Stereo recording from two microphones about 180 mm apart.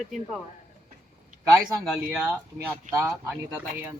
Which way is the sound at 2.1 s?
10° right (ahead or behind).